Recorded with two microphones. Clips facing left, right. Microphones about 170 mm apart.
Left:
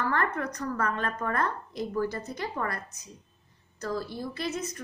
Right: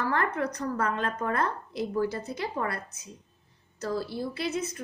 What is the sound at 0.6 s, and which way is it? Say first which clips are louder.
A woman's voice: right 1 dB; 30° right (ahead or behind).